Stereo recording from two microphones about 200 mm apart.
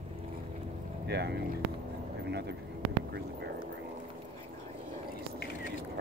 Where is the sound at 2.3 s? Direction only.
55° right (ahead or behind).